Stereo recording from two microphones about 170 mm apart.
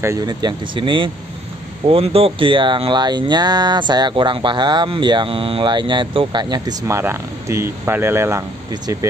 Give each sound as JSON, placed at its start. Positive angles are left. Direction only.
{"t": 0.0, "sound": "speech", "side_deg": -20}